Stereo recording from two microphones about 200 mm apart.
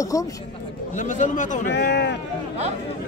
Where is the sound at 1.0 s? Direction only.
40° left (ahead or behind).